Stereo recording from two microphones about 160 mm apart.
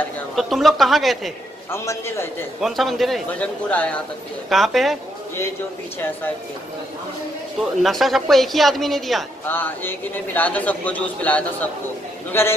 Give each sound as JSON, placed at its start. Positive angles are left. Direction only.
{"t": 0.4, "sound": "a man's voice", "side_deg": 0}
{"t": 1.7, "sound": "a man's voice", "side_deg": 15}
{"t": 2.6, "sound": "a man's voice", "side_deg": 0}
{"t": 7.8, "sound": "a man's voice", "side_deg": 0}
{"t": 9.5, "sound": "a man's voice", "side_deg": 10}